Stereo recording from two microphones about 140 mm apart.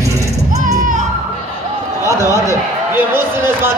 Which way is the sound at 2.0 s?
20° right (ahead or behind).